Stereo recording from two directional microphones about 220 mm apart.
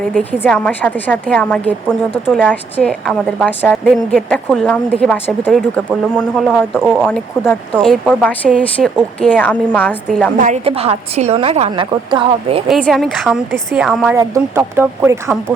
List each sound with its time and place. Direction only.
0.1 s a woman's voice: 5° left (ahead or behind)
10.3 s a woman's voice: 35° right (ahead or behind)
12.6 s a woman's voice: centre (ahead or behind)
14.2 s speech: 10° right (ahead or behind)